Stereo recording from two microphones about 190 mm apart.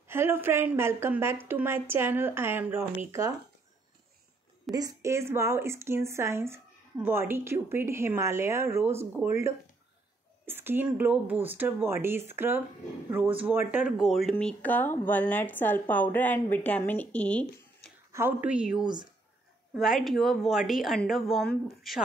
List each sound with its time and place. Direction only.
0.1 s speech: 10° right (ahead or behind)
4.7 s speech: 15° right (ahead or behind); by 17.9 s 5° left (ahead or behind)
18.1 s a woman's voice: 10° right (ahead or behind)